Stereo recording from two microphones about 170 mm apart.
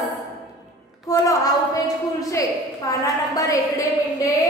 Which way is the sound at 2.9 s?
20° left (ahead or behind).